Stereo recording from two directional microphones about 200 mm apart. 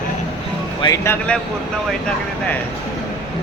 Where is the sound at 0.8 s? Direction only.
15° left (ahead or behind).